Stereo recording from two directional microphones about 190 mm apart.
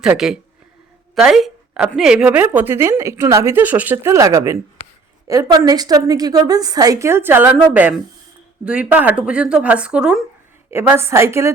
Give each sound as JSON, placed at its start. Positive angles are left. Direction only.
{"t": 0.0, "sound": "a woman's voice", "side_deg": -5}